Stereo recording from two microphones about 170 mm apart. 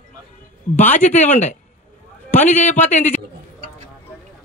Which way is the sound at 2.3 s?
45° left (ahead or behind).